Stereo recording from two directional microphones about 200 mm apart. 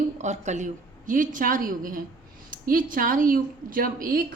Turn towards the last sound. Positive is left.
turn(degrees=-45)  # may be behind; listen again after turning